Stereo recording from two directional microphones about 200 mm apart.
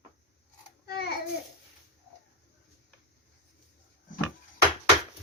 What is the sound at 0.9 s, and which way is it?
Babbling, 55° left (ahead or behind).